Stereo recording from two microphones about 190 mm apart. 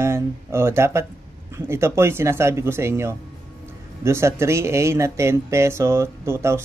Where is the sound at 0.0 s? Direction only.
15° right (ahead or behind).